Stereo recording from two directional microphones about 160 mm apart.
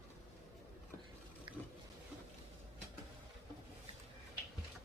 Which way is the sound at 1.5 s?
30° right (ahead or behind).